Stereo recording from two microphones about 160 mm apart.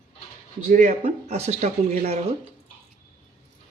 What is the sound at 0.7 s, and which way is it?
A man's voice, 55° right (ahead or behind).